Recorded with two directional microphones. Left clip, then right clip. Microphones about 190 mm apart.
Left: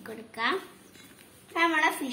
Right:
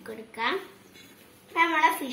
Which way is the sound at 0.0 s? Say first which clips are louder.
Even; 20° left (ahead or behind).